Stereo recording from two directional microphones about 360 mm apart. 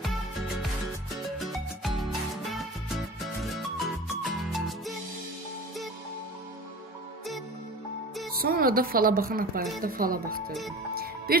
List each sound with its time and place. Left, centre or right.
0.0 s music: centre
8.3 s a woman's voice: right